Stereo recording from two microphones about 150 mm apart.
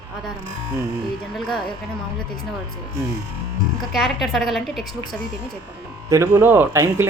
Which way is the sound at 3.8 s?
Centre (ahead or behind).